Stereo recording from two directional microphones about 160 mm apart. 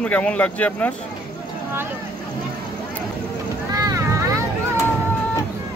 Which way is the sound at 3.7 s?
20° right (ahead or behind).